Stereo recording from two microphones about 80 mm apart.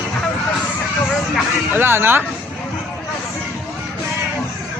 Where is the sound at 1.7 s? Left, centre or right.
Right.